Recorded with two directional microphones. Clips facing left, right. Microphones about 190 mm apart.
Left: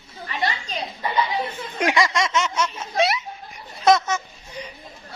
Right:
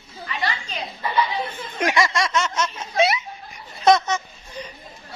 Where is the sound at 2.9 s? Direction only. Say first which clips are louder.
Right 2 dB; centre (ahead or behind).